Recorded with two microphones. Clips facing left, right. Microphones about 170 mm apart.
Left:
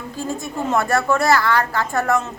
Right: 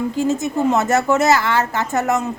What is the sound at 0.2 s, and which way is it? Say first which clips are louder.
A woman's voice: right 5 dB; 20° right (ahead or behind).